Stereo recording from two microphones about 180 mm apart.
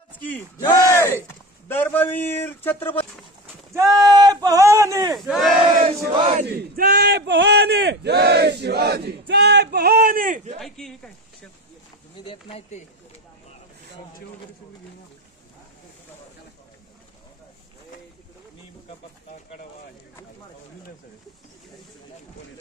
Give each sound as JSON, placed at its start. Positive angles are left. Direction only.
{"t": 0.6, "sound": "a man's voice", "side_deg": 20}
{"t": 3.7, "sound": "speech", "side_deg": -20}
{"t": 5.1, "sound": "battle cry", "side_deg": 0}
{"t": 5.9, "sound": "speech", "side_deg": -25}
{"t": 6.4, "sound": "speech", "side_deg": -60}
{"t": 10.6, "sound": "battle cry", "side_deg": 0}
{"t": 12.3, "sound": "speech", "side_deg": 35}